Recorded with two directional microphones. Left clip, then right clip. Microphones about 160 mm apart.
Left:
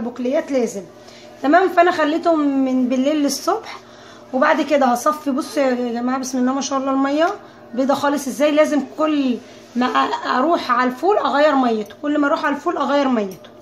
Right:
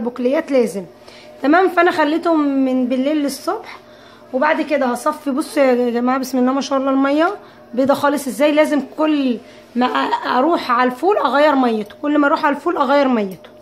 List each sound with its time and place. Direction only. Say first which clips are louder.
0.1 s a woman's voice: right 3 dB; 30° right (ahead or behind); by 5.1 s 5° left (ahead or behind)
5.2 s a woman's voice: right 3 dB; 20° right (ahead or behind)